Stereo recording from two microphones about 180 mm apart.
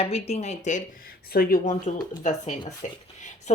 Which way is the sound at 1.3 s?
55° left (ahead or behind).